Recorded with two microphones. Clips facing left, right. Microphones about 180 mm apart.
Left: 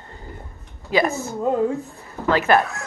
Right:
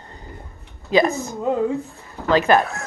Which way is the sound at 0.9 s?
20° right (ahead or behind).